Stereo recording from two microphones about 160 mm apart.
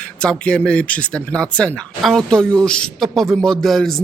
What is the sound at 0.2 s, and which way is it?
Speech, 5° left (ahead or behind).